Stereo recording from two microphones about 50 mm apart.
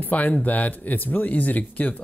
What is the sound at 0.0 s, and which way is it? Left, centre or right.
Speech, left.